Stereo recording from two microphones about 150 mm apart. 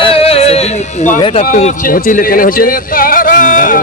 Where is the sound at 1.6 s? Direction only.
65° left (ahead or behind).